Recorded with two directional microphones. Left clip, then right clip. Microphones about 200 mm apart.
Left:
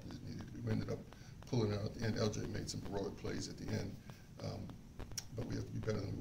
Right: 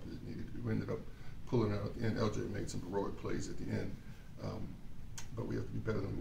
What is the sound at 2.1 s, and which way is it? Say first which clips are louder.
Speech: right 2 dB; 15° left (ahead or behind).